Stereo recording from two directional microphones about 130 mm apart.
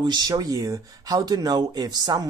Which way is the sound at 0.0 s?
35° right (ahead or behind).